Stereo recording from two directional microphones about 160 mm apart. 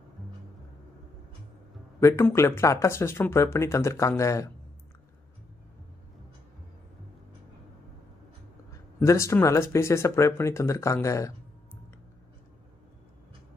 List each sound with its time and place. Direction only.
2.0 s speech: 15° left (ahead or behind)
9.0 s speech: 15° left (ahead or behind)